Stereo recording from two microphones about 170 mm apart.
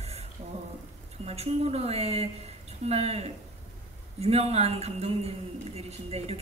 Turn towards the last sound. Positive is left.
turn(degrees=-40)  # may be behind; listen again after turning